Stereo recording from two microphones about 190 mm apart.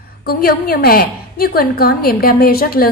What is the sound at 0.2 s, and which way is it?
A woman's voice, 50° left (ahead or behind).